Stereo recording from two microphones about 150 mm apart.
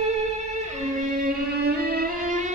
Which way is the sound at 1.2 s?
90° right.